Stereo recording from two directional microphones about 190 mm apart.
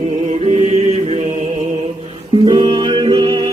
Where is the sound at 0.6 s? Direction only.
35° right (ahead or behind).